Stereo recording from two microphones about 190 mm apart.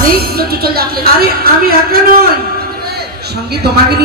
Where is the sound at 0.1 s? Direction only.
55° right (ahead or behind).